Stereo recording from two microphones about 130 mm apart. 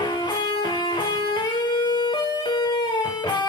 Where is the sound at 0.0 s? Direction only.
35° left (ahead or behind).